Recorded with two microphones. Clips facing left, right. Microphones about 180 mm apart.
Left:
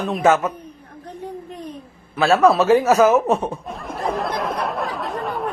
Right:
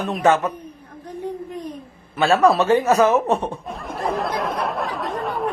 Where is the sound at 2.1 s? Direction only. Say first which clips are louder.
Left 1 dB; centre (ahead or behind).